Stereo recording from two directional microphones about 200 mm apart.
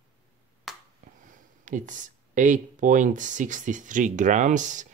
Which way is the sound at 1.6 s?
40° right (ahead or behind).